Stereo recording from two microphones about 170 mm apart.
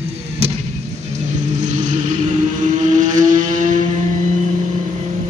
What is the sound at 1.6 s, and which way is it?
Vehicle, 45° right (ahead or behind).